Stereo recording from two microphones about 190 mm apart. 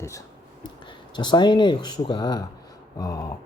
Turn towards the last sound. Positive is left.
turn(degrees=20)  # may be behind; listen again after turning